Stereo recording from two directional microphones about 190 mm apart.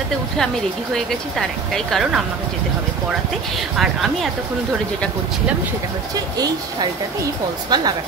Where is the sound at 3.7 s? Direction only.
Centre (ahead or behind).